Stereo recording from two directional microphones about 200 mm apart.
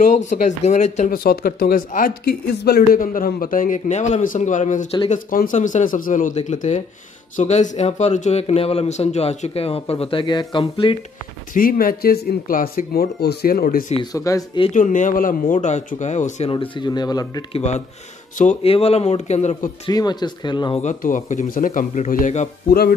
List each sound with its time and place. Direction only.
0.3 s a man's voice: 40° left (ahead or behind)
11.5 s speech: 45° left (ahead or behind)
14.1 s speech: 15° left (ahead or behind)
14.7 s a man's voice: 40° left (ahead or behind); by 17.6 s 20° left (ahead or behind)
17.6 s a man's voice: 35° left (ahead or behind)
19.9 s speech: 20° left (ahead or behind)
20.8 s a man's voice: 40° left (ahead or behind)